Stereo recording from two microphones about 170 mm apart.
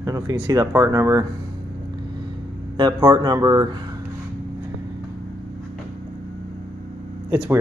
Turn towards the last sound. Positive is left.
turn(degrees=-10)  # may be behind; listen again after turning